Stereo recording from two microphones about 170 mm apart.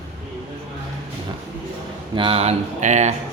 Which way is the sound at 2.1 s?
35° right (ahead or behind).